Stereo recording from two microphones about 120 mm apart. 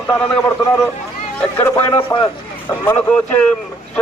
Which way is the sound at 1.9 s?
45° left (ahead or behind).